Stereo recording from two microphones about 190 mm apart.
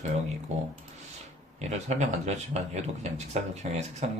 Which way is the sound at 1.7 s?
35° right (ahead or behind).